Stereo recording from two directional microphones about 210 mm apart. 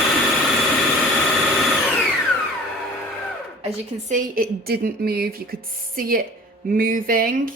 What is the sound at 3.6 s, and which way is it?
A woman's voice, 35° right (ahead or behind).